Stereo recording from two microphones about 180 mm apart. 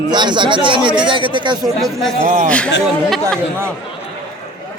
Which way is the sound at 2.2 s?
40° right (ahead or behind).